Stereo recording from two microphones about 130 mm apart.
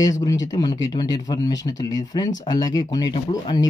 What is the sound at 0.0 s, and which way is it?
Speech, 25° left (ahead or behind).